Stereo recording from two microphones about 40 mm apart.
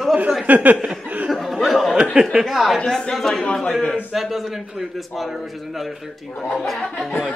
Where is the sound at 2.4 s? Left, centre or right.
Centre.